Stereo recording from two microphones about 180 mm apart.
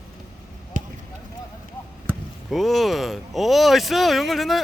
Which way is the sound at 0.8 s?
45° right (ahead or behind).